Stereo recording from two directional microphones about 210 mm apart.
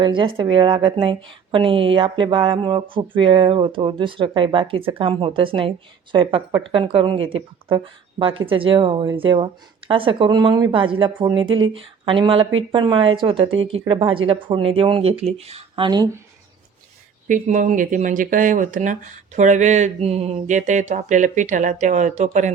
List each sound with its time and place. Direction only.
0.0 s a woman's voice: 25° right (ahead or behind)
17.2 s speech: 35° right (ahead or behind)